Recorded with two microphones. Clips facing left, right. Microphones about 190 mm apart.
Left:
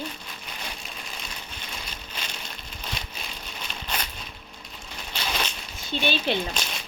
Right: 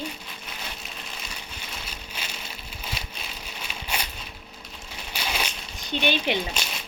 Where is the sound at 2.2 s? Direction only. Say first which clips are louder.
Even; 10° right (ahead or behind).